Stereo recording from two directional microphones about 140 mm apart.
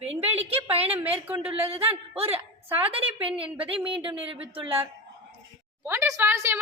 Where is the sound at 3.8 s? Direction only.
40° right (ahead or behind).